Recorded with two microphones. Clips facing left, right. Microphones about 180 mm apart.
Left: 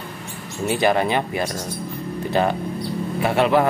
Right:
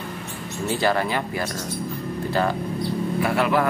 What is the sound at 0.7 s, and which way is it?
Speech, 20° left (ahead or behind).